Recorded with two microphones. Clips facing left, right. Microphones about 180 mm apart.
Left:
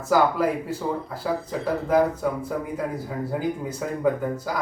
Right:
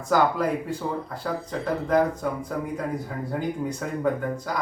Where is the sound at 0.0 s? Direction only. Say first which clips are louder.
Left 2 dB; 5° left (ahead or behind).